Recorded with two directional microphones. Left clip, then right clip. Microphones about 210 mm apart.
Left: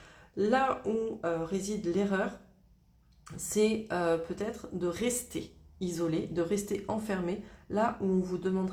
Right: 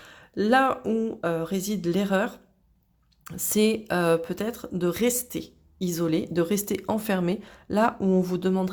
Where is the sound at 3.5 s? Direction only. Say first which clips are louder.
Right 5 dB; 40° right (ahead or behind).